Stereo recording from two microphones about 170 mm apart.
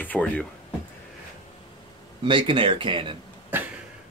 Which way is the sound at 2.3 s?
30° right (ahead or behind).